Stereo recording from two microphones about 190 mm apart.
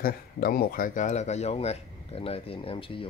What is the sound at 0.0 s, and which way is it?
Speech, 50° left (ahead or behind).